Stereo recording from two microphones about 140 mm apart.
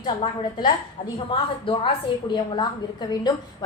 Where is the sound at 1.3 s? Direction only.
40° left (ahead or behind).